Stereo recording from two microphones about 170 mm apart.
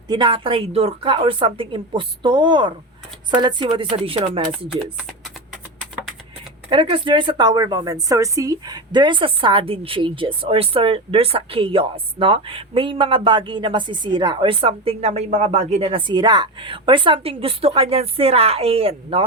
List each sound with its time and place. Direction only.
0.1 s a woman's voice: 30° right (ahead or behind)
6.7 s a woman's voice: 30° right (ahead or behind)